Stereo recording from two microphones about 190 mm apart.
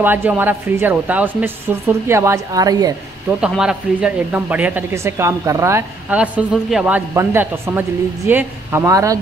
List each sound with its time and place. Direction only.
0.0 s speech: 10° right (ahead or behind)
3.3 s speech: 5° right (ahead or behind)